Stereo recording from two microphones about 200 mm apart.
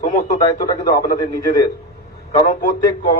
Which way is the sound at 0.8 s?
50° left (ahead or behind).